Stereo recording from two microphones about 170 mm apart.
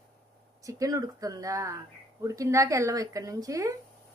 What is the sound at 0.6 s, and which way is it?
Speech, 20° right (ahead or behind).